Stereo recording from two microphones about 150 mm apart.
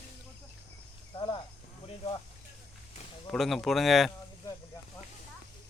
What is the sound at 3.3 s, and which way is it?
Speech, centre (ahead or behind).